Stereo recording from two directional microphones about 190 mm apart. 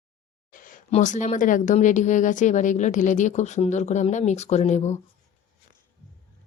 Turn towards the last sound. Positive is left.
turn(degrees=35)  # may be behind; listen again after turning